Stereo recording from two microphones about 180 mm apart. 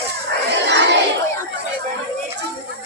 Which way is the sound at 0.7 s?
75° right (ahead or behind).